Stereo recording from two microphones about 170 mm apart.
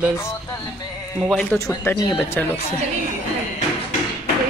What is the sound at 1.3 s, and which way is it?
Speech, 5° left (ahead or behind).